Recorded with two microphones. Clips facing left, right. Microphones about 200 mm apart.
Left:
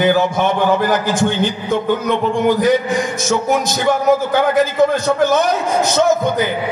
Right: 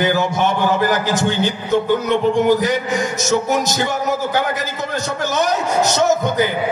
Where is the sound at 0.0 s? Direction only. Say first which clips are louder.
Left 3 dB; 55° left (ahead or behind).